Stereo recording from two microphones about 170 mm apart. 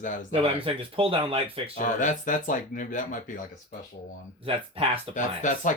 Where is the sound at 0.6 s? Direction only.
30° right (ahead or behind).